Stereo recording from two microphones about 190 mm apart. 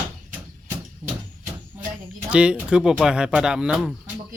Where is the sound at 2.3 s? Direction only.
5° right (ahead or behind).